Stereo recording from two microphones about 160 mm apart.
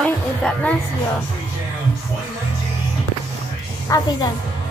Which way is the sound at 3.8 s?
20° left (ahead or behind).